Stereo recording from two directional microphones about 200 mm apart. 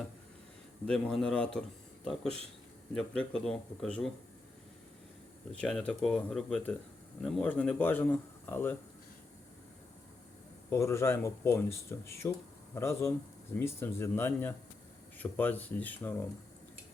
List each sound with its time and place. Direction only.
0.9 s speech: 5° left (ahead or behind)
2.2 s speech: 30° right (ahead or behind)
2.9 s speech: 5° left (ahead or behind)
5.5 s speech: 5° left (ahead or behind)
10.7 s speech: 15° left (ahead or behind)